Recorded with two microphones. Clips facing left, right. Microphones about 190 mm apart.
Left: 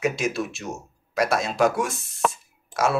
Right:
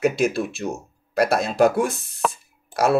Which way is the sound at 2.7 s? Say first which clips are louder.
Right 4 dB; 60° right (ahead or behind).